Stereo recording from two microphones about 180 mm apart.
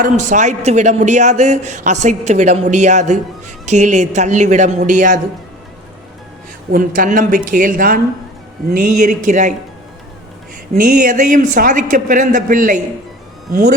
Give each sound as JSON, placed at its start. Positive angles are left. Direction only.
{"t": 0.0, "sound": "a man's voice", "side_deg": -45}
{"t": 6.7, "sound": "speech", "side_deg": -50}
{"t": 10.8, "sound": "speech", "side_deg": -50}